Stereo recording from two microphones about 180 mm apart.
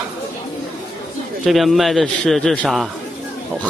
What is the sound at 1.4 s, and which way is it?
Speech, centre (ahead or behind).